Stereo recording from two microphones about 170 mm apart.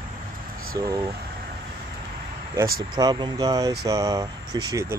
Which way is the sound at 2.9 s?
25° right (ahead or behind).